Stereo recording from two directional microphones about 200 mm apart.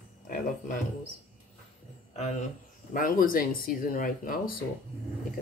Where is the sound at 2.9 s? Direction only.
45° left (ahead or behind).